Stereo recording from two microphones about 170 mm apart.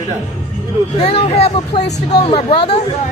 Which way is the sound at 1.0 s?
35° left (ahead or behind).